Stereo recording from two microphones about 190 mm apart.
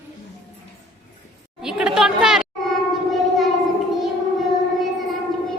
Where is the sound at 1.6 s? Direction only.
5° right (ahead or behind).